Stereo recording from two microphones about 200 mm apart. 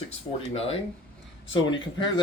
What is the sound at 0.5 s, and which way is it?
Speech, 30° left (ahead or behind).